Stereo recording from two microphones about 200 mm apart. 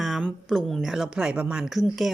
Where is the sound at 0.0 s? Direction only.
Centre (ahead or behind).